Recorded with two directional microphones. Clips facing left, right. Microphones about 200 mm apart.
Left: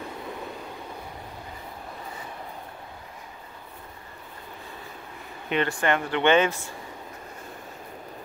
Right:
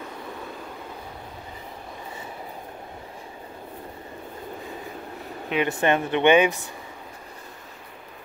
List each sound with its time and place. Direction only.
5.7 s speech: 20° right (ahead or behind)